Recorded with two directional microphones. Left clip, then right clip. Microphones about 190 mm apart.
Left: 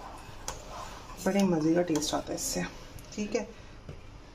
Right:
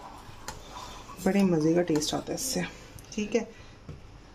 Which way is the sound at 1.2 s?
40° right (ahead or behind).